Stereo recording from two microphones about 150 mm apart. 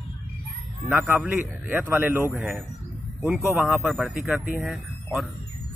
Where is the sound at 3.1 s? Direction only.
Centre (ahead or behind).